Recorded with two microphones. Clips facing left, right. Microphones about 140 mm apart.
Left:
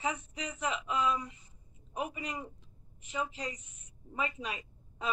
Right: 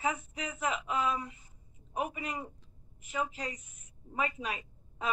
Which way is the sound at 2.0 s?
10° right (ahead or behind).